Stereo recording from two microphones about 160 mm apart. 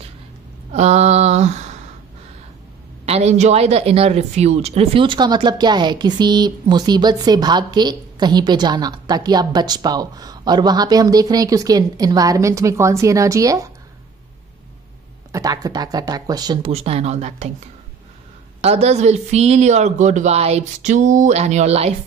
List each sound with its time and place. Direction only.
0.7 s speech: 45° right (ahead or behind)
3.1 s speech: 40° right (ahead or behind); by 13.7 s 20° right (ahead or behind)
15.3 s speech: 25° right (ahead or behind)
16.6 s speech: 40° right (ahead or behind)
18.6 s speech: 40° right (ahead or behind)